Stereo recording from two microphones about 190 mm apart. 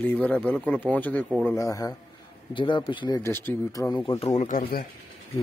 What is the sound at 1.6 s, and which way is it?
Speech, 15° left (ahead or behind).